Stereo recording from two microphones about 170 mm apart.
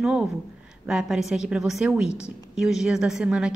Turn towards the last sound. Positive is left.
turn(degrees=-5)  # may be behind; listen again after turning